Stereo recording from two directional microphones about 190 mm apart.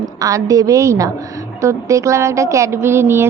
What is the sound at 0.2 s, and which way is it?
A woman's voice, 15° right (ahead or behind).